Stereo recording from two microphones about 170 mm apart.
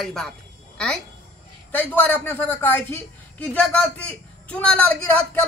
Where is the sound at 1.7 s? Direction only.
10° left (ahead or behind).